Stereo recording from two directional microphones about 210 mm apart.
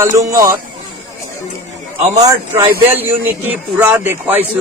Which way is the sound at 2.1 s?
15° right (ahead or behind).